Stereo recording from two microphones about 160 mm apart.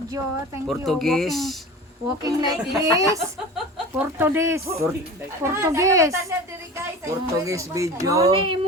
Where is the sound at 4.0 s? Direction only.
15° right (ahead or behind).